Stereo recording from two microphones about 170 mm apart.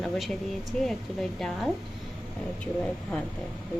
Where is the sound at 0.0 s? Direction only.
Centre (ahead or behind).